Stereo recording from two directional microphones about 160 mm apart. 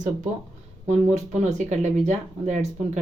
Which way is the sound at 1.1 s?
45° right (ahead or behind).